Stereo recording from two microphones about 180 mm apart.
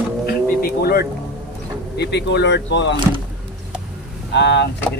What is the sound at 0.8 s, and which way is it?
Speech, 60° left (ahead or behind).